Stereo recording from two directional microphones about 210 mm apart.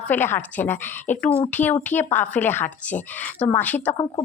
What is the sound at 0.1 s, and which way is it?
A woman's voice, 10° left (ahead or behind).